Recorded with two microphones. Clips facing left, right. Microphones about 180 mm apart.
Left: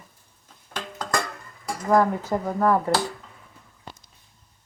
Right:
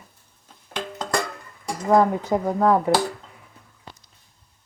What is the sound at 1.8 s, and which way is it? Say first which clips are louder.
Speech: right 2 dB; 20° right (ahead or behind).